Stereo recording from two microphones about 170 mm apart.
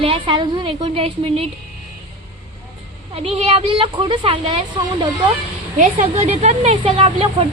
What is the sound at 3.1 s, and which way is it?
A woman's voice, 35° right (ahead or behind).